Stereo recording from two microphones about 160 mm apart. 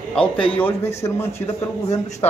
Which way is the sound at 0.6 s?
15° left (ahead or behind).